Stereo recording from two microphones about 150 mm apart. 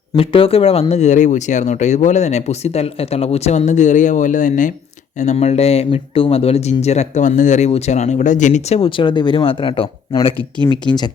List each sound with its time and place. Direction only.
0.2 s speech: 40° left (ahead or behind)